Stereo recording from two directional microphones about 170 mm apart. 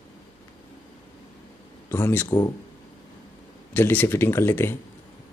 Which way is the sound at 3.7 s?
10° left (ahead or behind).